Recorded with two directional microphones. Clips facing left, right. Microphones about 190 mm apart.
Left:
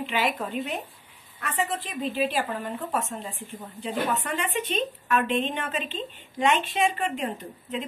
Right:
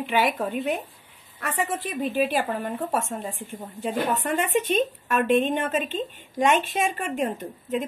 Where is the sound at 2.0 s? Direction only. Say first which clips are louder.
Right 3 dB; 50° right (ahead or behind).